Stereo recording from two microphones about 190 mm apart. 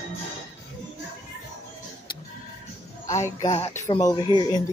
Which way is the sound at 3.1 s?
15° left (ahead or behind).